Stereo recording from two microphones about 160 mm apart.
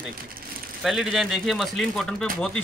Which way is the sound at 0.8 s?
Centre (ahead or behind).